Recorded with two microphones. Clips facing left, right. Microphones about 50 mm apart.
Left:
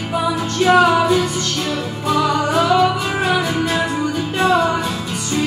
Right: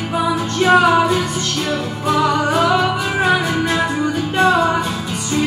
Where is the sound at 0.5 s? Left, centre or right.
Centre.